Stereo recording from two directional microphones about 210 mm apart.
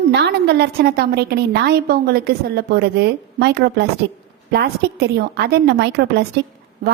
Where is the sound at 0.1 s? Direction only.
55° right (ahead or behind).